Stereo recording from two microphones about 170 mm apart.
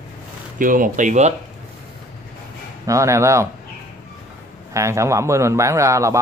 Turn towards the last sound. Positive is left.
turn(degrees=-20)  # may be behind; listen again after turning